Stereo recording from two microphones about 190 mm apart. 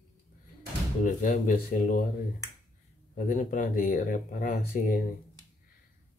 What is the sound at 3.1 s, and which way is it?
Speech, 45° left (ahead or behind).